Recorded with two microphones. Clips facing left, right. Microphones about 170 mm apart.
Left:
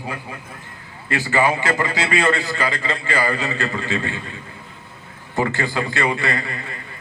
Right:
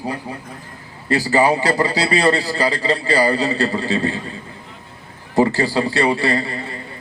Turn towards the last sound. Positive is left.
turn(degrees=-30)  # may be behind; listen again after turning